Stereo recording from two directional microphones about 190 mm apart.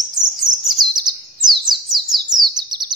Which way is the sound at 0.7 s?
20° right (ahead or behind).